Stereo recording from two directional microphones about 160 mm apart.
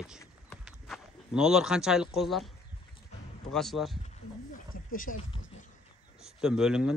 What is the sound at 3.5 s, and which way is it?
Speech, centre (ahead or behind).